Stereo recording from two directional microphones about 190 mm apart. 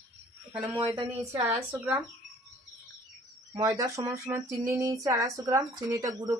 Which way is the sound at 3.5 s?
15° right (ahead or behind).